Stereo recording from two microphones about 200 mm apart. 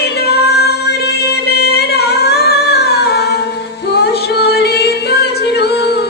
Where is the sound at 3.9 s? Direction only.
55° left (ahead or behind).